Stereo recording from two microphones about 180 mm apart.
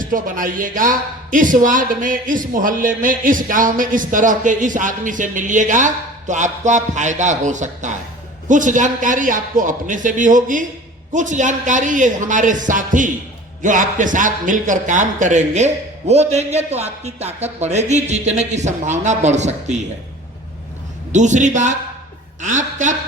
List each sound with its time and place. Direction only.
0.0 s a man's voice: 50° right (ahead or behind)
21.1 s a man's voice: 45° right (ahead or behind)